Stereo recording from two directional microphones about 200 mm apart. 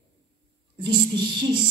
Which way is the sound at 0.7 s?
25° right (ahead or behind).